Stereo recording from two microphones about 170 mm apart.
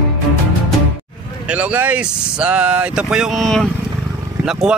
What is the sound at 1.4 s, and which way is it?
Speech, 10° right (ahead or behind).